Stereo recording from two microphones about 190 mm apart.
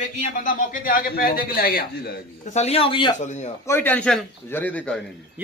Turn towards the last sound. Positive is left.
turn(degrees=5)  # may be behind; listen again after turning